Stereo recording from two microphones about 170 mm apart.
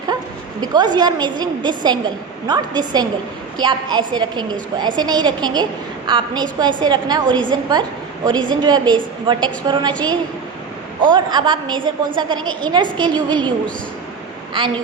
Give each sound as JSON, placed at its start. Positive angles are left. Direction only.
{"t": 0.6, "sound": "a woman's voice", "side_deg": -25}
{"t": 11.0, "sound": "a woman's voice", "side_deg": -25}